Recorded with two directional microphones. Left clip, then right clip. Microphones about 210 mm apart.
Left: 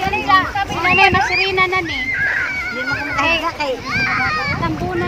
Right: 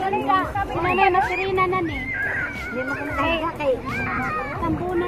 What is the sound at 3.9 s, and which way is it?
Speech, 40° right (ahead or behind).